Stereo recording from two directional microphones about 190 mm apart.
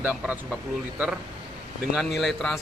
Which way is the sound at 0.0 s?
5° right (ahead or behind).